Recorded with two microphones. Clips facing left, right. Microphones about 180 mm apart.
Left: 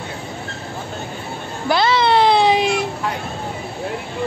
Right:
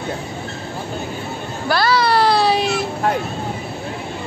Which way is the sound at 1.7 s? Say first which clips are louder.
Left 1 dB; 20° left (ahead or behind).